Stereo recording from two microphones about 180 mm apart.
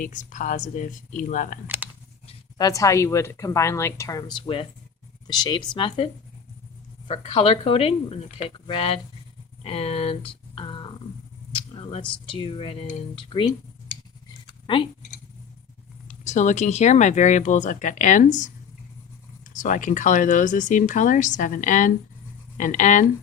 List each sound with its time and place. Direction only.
0.0 s speech: 45° left (ahead or behind)
1.6 s speech: 10° right (ahead or behind)
2.6 s speech: 20° left (ahead or behind)
7.1 s speech: 35° left (ahead or behind)
11.7 s a sound: 35° left (ahead or behind)
12.3 s speech: 30° left (ahead or behind)
14.7 s speech: 30° left (ahead or behind)
16.2 s speech: 40° left (ahead or behind)
19.5 s speech: 45° left (ahead or behind)